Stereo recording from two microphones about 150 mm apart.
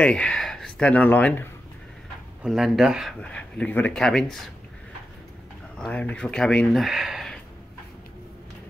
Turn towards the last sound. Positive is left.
turn(degrees=0)  # may be behind; listen again after turning